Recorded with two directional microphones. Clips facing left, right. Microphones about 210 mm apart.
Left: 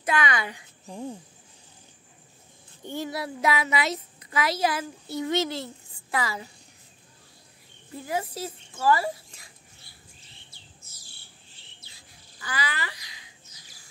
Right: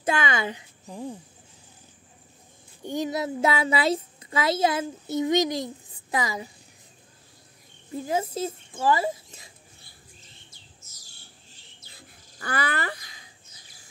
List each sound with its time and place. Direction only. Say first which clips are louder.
0.0 s a woman's voice: right 1 dB; 25° right (ahead or behind)
2.8 s a woman's voice: right 4 dB; 15° right (ahead or behind)
7.9 s speech: right 4 dB; 20° right (ahead or behind)
10.5 s bird: left 1 dB; 45° right (ahead or behind)